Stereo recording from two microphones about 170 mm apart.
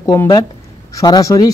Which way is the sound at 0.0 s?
15° left (ahead or behind).